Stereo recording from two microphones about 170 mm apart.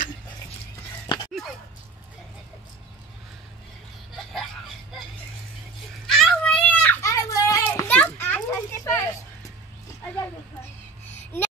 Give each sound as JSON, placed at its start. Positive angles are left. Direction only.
{"t": 1.0, "sound": "dog", "side_deg": 25}
{"t": 6.0, "sound": "children playing", "side_deg": 0}
{"t": 11.1, "sound": "a sound", "side_deg": 10}